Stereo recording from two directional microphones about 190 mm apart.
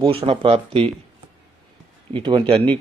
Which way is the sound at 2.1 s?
25° right (ahead or behind).